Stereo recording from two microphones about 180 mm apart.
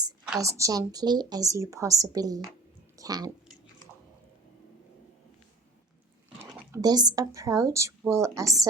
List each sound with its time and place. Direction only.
0.3 s a woman's voice: 15° right (ahead or behind)
6.4 s speech: 15° right (ahead or behind)